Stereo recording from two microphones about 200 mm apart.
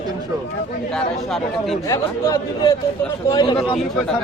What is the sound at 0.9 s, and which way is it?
Speech, centre (ahead or behind).